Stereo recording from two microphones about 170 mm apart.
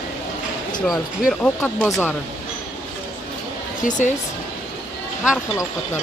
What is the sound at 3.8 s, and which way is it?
Speech, 45° left (ahead or behind).